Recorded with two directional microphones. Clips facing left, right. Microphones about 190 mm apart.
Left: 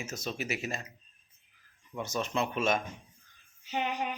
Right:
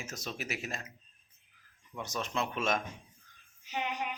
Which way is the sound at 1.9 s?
Centre (ahead or behind).